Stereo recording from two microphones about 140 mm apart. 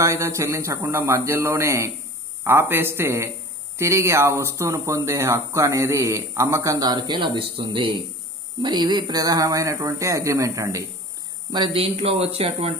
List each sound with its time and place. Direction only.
0.0 s speech: 20° right (ahead or behind)
11.5 s speech: 35° right (ahead or behind)